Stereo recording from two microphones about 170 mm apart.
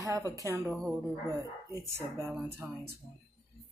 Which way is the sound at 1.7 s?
15° right (ahead or behind).